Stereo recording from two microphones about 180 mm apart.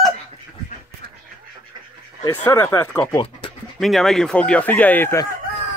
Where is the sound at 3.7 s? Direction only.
Centre (ahead or behind).